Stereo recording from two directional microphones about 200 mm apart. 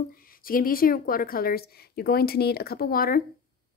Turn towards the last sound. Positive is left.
turn(degrees=45)  # may be behind; listen again after turning